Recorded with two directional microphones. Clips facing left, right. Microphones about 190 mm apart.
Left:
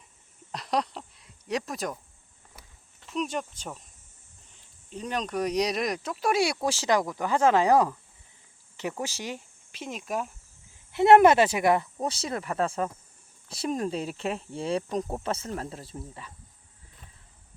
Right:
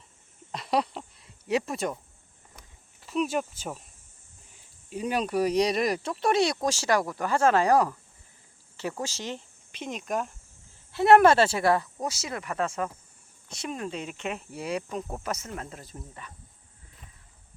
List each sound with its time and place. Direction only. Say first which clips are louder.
0.5 s speech: right 2 dB; centre (ahead or behind)
3.0 s speech: right 3 dB; 5° right (ahead or behind)
10.9 s speech: left 1 dB; 20° left (ahead or behind)
12.0 s speech: left 2 dB; 30° left (ahead or behind)